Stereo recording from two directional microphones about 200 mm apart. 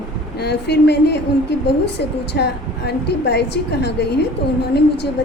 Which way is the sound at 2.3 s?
55° left (ahead or behind).